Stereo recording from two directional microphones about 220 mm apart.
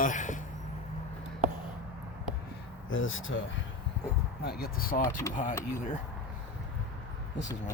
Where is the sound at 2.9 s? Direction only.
65° left (ahead or behind).